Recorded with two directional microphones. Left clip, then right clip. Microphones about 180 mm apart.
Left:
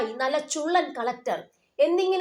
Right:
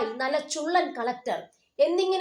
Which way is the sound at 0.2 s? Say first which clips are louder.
Left 1 dB; 30° left (ahead or behind).